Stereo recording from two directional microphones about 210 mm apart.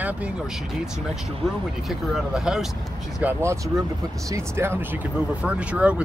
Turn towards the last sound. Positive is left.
turn(degrees=-5)  # may be behind; listen again after turning